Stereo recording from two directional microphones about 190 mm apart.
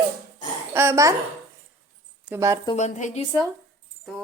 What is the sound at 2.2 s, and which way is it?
Speech, 10° right (ahead or behind).